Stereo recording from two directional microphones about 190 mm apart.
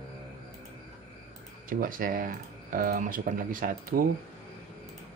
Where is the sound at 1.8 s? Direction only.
45° right (ahead or behind).